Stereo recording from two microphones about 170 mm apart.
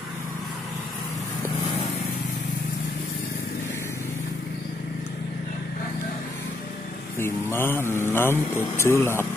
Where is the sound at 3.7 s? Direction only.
15° left (ahead or behind).